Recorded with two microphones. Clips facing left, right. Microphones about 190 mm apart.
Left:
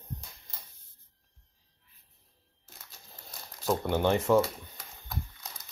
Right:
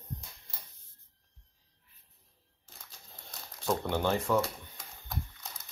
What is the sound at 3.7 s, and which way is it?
Speech, 5° left (ahead or behind).